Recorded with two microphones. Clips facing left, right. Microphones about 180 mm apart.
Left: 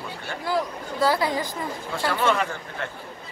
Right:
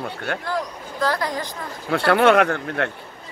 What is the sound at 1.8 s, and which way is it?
Speech, 65° right (ahead or behind).